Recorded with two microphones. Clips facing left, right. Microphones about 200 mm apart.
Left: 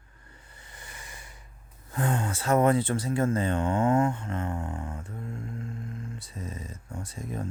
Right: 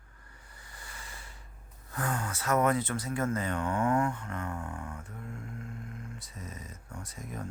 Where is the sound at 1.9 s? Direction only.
25° left (ahead or behind).